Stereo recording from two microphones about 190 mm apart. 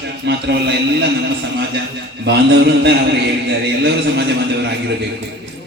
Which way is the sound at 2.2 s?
65° right (ahead or behind).